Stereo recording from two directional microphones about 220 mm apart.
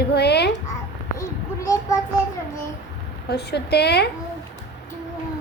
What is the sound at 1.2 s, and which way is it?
Child singing, 15° left (ahead or behind).